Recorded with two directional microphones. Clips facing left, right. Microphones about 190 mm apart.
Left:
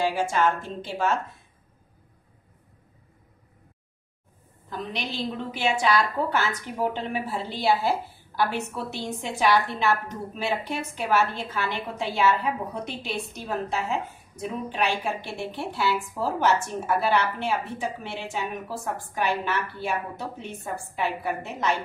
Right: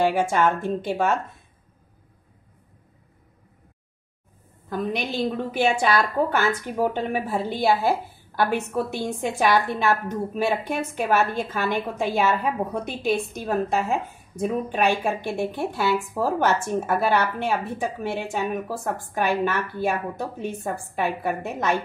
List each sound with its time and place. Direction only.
0.0 s speech: 55° right (ahead or behind)
4.6 s a woman's voice: 55° right (ahead or behind)